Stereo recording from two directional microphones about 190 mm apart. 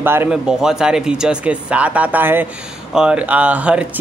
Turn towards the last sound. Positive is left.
turn(degrees=-5)  # may be behind; listen again after turning